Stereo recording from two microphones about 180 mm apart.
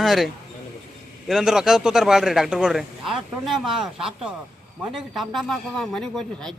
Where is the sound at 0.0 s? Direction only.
Centre (ahead or behind).